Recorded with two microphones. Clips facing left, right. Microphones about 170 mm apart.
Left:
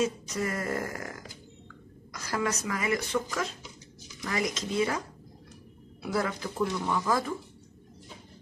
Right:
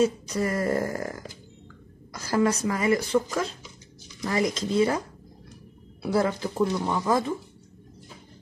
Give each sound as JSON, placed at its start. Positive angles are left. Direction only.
{"t": 0.0, "sound": "speech", "side_deg": -35}
{"t": 2.1, "sound": "speech", "side_deg": -30}
{"t": 6.0, "sound": "speech", "side_deg": -30}